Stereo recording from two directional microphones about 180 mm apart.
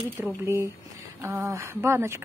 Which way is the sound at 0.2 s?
10° right (ahead or behind).